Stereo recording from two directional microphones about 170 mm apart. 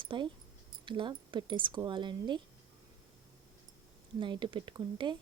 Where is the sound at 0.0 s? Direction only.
30° right (ahead or behind).